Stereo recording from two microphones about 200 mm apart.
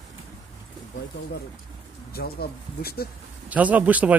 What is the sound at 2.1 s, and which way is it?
Speech, 50° left (ahead or behind).